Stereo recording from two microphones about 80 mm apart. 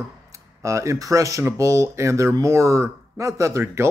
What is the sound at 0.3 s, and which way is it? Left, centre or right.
Speech, right.